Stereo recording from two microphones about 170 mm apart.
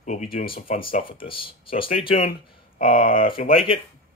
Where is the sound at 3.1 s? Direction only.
55° left (ahead or behind).